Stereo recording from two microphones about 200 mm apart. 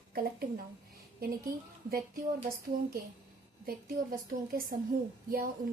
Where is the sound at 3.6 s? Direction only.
45° right (ahead or behind).